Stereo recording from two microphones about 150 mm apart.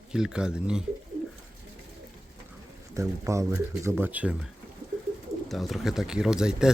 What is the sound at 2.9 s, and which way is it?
Speech, 20° right (ahead or behind).